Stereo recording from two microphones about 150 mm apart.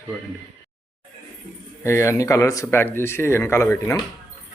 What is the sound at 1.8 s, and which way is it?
Speech, 20° left (ahead or behind).